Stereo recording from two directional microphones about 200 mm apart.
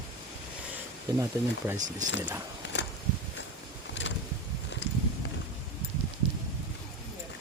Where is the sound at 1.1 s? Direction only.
15° right (ahead or behind).